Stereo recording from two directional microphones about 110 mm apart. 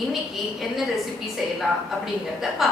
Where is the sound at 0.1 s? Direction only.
Centre (ahead or behind).